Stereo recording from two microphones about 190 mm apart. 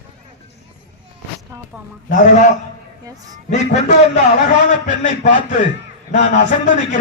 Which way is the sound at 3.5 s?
40° left (ahead or behind).